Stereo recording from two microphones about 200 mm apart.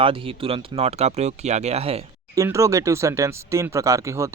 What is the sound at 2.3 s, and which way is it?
Speech, 15° right (ahead or behind).